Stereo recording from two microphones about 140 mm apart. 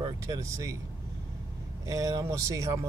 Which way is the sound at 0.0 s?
25° right (ahead or behind).